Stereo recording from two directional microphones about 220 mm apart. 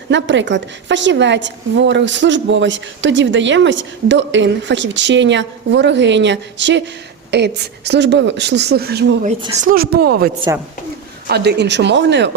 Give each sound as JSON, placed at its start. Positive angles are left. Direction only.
{"t": 0.1, "sound": "a woman's voice", "side_deg": -55}
{"t": 10.5, "sound": "speech", "side_deg": -15}
{"t": 11.3, "sound": "speech", "side_deg": -50}